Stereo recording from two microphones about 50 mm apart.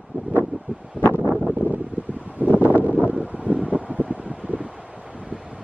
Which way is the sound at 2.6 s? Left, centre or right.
Right.